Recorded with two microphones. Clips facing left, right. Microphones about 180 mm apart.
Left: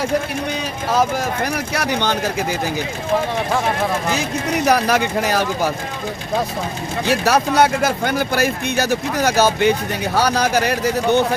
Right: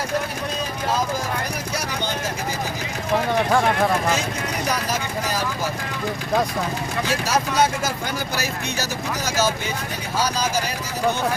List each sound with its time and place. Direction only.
1.7 s speech: 70° left (ahead or behind)
4.2 s speech: 70° left (ahead or behind)
7.1 s speech: 65° left (ahead or behind)